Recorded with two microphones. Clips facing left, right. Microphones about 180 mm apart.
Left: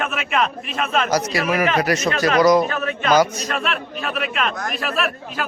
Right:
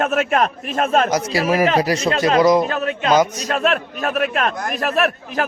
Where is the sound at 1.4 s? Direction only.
35° right (ahead or behind).